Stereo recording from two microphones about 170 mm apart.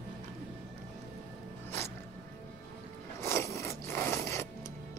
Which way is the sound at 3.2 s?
15° left (ahead or behind).